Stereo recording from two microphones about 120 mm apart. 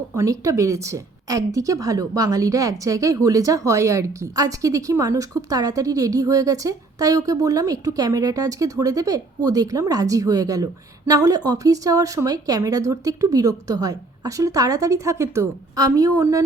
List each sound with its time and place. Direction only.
0.1 s a woman's voice: 25° right (ahead or behind)